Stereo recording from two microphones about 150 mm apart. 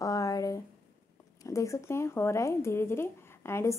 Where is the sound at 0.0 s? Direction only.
25° left (ahead or behind).